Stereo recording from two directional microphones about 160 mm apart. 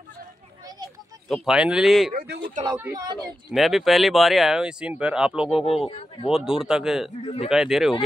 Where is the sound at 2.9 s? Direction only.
25° right (ahead or behind).